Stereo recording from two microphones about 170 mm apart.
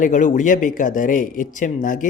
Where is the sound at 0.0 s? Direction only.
50° left (ahead or behind).